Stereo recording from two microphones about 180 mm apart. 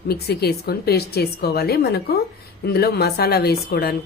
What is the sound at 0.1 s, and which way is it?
A woman's voice, 60° left (ahead or behind).